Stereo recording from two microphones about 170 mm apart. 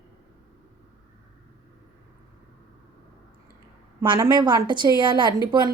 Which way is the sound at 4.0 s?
20° right (ahead or behind).